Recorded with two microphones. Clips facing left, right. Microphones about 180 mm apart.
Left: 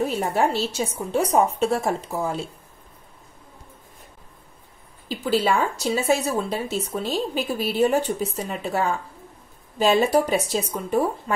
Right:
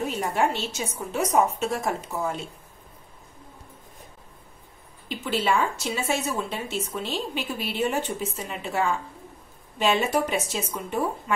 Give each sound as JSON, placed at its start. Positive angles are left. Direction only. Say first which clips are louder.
{"t": 0.0, "sound": "a woman's voice", "louder": "left 3 dB", "side_deg": 35}
{"t": 5.0, "sound": "a woman's voice", "louder": "left 4 dB", "side_deg": 35}